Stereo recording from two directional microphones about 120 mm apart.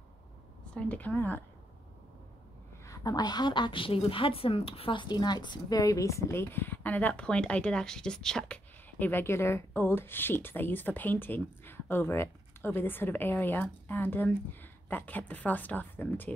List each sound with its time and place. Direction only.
0.7 s a woman's voice: 10° left (ahead or behind)
2.8 s a woman's voice: 30° left (ahead or behind)